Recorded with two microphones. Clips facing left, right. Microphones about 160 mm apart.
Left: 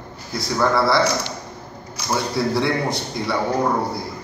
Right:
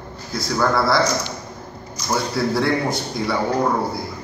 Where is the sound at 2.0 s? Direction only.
65° left (ahead or behind).